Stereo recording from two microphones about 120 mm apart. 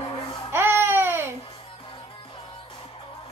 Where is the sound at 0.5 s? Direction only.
20° right (ahead or behind).